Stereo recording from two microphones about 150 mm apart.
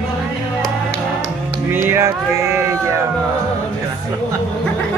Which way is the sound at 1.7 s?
15° right (ahead or behind).